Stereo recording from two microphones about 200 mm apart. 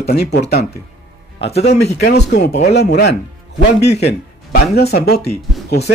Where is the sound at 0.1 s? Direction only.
55° left (ahead or behind).